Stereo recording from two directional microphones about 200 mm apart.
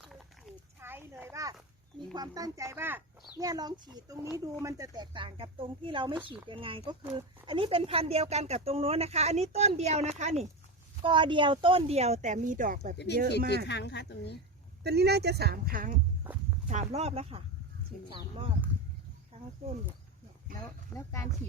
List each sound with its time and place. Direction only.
0.8 s a sound: 10° right (ahead or behind)
2.1 s speech: 20° right (ahead or behind); by 10.4 s 35° right (ahead or behind)
11.0 s speech: 25° right (ahead or behind); by 13.7 s 50° right (ahead or behind)
13.7 s speech: 60° left (ahead or behind)
14.8 s speech: 55° right (ahead or behind); by 18.5 s 25° right (ahead or behind)
20.9 s speech: 15° left (ahead or behind)